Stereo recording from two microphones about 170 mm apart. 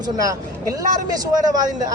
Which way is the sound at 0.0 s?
20° right (ahead or behind).